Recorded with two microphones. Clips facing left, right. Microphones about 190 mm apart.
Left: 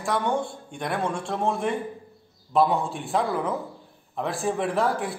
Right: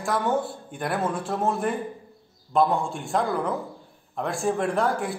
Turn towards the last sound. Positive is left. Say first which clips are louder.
# even
turn(degrees=0)  # may be behind; listen again after turning